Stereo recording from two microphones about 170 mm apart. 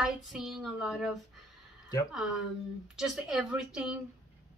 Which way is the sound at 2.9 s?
5° right (ahead or behind).